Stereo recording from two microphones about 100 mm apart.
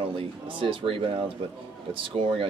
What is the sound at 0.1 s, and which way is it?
Speech, 60° right (ahead or behind).